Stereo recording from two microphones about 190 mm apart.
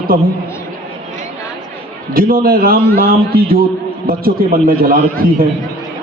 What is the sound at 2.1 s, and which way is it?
A man's voice, 55° right (ahead or behind).